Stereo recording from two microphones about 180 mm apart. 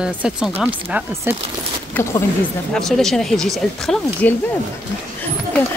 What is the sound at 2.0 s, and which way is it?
Speech, 10° left (ahead or behind).